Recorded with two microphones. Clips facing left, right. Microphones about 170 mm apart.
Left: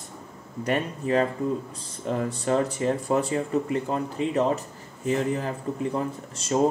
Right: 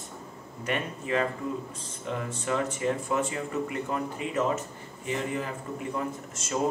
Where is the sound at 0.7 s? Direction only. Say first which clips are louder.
Left 5 dB; 35° left (ahead or behind).